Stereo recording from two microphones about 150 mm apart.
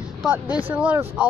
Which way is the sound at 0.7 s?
10° right (ahead or behind).